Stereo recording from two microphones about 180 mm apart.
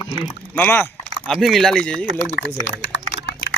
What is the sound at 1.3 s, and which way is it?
Speech, centre (ahead or behind).